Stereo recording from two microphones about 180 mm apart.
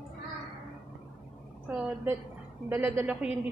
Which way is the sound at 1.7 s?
5° right (ahead or behind).